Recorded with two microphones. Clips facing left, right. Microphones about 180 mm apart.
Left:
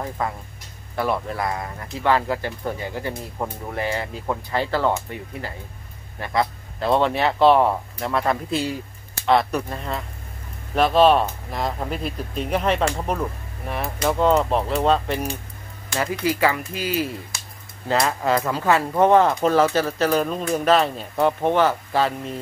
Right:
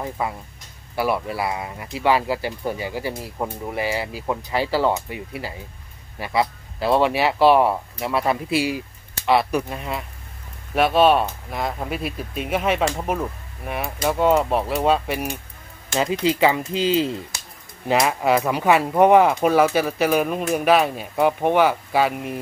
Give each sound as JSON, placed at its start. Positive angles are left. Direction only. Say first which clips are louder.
{"t": 0.2, "sound": "speech", "louder": "even", "side_deg": -10}
{"t": 15.9, "sound": "speech", "louder": "right 3 dB", "side_deg": -20}